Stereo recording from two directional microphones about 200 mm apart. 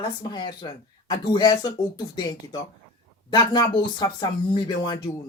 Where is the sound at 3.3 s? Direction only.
20° left (ahead or behind).